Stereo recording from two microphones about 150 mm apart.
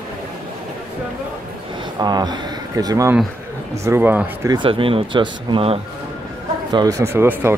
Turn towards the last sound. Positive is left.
turn(degrees=-15)  # may be behind; listen again after turning